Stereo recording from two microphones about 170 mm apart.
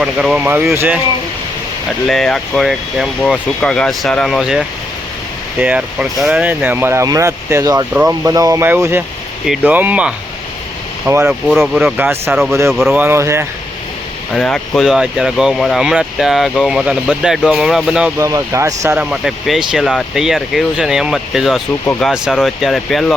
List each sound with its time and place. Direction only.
0.0 s speech: 5° right (ahead or behind)
2.0 s speech: centre (ahead or behind)
13.0 s speech: 15° right (ahead or behind)
14.3 s speech: 5° left (ahead or behind)
18.2 s speech: 20° right (ahead or behind)
18.9 s speech: centre (ahead or behind)